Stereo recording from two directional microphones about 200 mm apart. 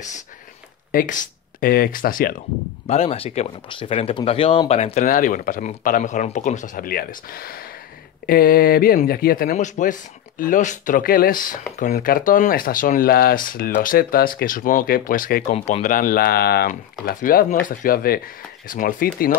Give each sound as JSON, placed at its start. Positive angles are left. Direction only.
{"t": 0.9, "sound": "speech", "side_deg": 40}
{"t": 2.9, "sound": "speech", "side_deg": 30}